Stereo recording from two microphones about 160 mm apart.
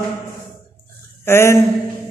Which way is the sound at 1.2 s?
15° left (ahead or behind).